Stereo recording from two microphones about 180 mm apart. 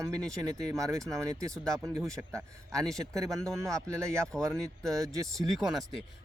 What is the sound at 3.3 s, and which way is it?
Speech, centre (ahead or behind).